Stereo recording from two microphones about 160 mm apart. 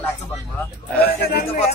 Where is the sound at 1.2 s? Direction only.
75° left (ahead or behind).